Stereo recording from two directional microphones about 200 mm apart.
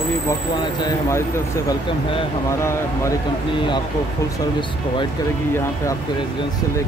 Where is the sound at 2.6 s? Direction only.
15° left (ahead or behind).